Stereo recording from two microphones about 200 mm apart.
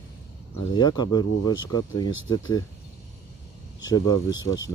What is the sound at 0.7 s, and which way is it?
Speech, 20° left (ahead or behind).